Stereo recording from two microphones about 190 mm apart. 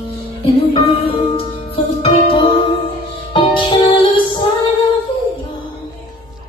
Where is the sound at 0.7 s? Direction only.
30° left (ahead or behind).